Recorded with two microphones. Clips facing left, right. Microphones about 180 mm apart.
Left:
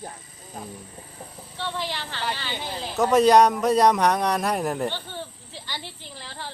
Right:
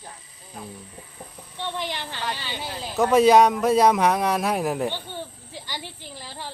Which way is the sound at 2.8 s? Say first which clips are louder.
Right 1 dB; centre (ahead or behind).